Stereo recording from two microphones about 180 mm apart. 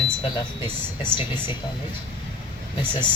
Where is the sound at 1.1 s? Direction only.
25° left (ahead or behind).